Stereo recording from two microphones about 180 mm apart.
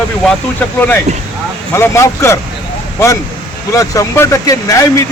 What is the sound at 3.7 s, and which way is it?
Speech, 15° left (ahead or behind).